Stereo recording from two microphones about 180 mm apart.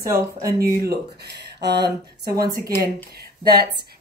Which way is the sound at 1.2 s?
70° right (ahead or behind).